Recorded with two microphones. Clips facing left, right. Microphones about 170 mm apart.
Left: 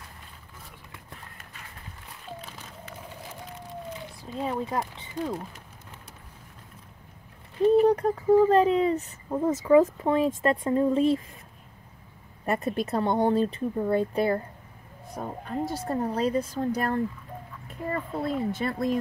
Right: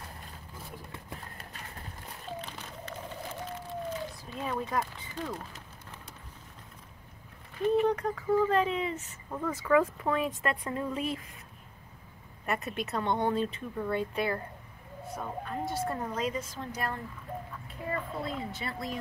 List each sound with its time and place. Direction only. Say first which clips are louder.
4.5 s speech: left 2 dB; 25° left (ahead or behind)
7.6 s speech: left 7 dB; 35° left (ahead or behind)
12.4 s speech: left 6 dB; 35° left (ahead or behind)
17.6 s speech: left 5 dB; 50° left (ahead or behind)